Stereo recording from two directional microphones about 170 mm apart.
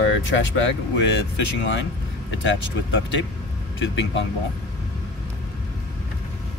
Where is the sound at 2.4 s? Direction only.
90° left.